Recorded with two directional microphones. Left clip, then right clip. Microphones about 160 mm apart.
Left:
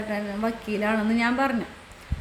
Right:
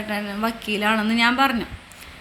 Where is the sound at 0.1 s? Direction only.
15° left (ahead or behind).